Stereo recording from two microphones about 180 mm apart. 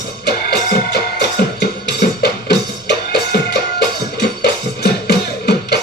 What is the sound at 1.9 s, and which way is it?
Music, 65° left (ahead or behind).